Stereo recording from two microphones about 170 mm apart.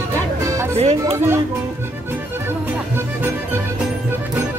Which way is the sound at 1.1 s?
15° right (ahead or behind).